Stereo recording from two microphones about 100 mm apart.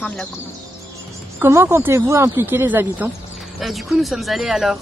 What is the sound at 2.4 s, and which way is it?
Speech, 20° right (ahead or behind).